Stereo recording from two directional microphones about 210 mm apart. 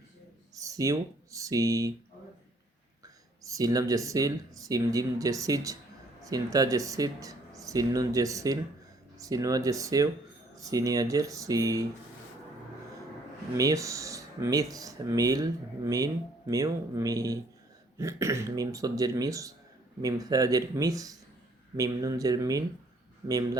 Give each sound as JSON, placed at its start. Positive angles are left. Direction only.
{"t": 0.5, "sound": "speech", "side_deg": -15}
{"t": 3.4, "sound": "speech", "side_deg": -15}
{"t": 13.6, "sound": "speech", "side_deg": -15}